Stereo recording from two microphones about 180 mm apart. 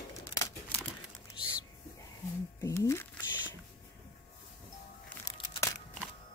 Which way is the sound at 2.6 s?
15° left (ahead or behind).